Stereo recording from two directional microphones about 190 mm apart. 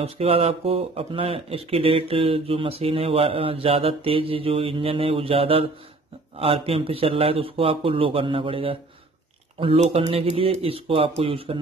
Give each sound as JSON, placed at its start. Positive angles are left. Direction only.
{"t": 0.0, "sound": "speech", "side_deg": -30}